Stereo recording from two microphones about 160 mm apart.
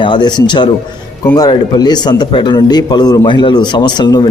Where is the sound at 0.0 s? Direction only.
30° left (ahead or behind).